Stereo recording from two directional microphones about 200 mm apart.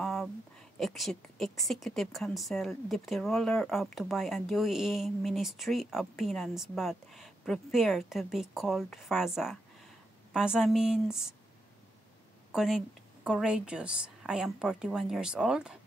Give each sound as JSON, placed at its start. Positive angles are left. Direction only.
{"t": 0.0, "sound": "a sound", "side_deg": 0}
{"t": 0.7, "sound": "speech", "side_deg": 0}
{"t": 12.5, "sound": "speech", "side_deg": 0}